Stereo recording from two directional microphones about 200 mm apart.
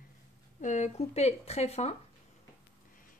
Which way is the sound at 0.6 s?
35° left (ahead or behind).